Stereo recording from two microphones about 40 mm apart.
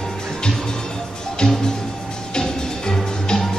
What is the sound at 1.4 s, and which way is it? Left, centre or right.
Music, centre.